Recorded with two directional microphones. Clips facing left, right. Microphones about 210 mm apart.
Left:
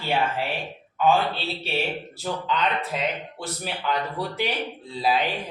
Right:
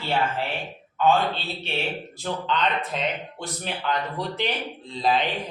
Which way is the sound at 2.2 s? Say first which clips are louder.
Even; 5° left (ahead or behind).